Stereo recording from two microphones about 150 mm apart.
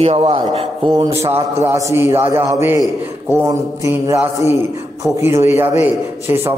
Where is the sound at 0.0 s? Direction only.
40° right (ahead or behind).